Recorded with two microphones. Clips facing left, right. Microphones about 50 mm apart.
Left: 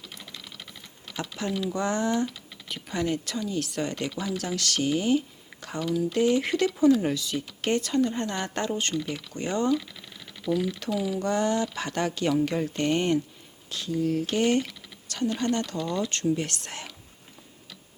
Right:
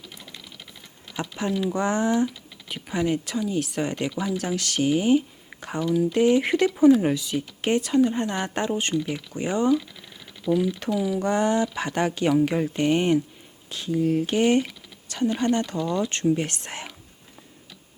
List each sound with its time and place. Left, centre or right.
1.1 s speech: centre